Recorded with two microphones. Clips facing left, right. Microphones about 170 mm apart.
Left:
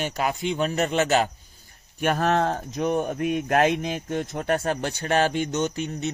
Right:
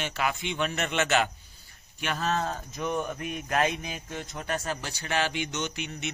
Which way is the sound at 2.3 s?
65° left (ahead or behind).